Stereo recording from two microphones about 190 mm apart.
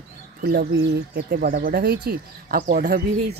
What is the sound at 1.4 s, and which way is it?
Speech, 45° right (ahead or behind).